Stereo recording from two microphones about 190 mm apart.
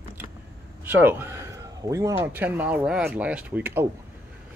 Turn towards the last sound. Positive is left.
turn(degrees=-10)  # may be behind; listen again after turning